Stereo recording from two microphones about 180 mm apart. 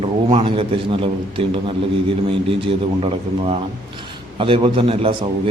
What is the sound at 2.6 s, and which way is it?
A man's voice, 30° right (ahead or behind).